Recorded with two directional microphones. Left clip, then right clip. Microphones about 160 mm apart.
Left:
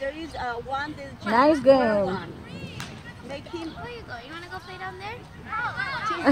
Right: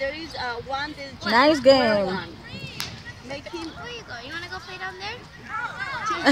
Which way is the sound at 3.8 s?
90° left.